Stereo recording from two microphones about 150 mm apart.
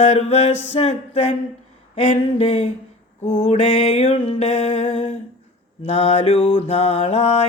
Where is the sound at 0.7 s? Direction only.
45° left (ahead or behind).